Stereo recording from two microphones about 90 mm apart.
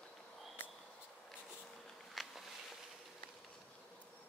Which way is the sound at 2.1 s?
Centre (ahead or behind).